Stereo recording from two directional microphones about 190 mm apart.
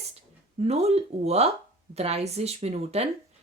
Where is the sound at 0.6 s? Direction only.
35° right (ahead or behind).